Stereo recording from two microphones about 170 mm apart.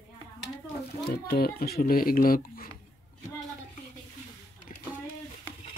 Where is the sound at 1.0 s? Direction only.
65° left (ahead or behind).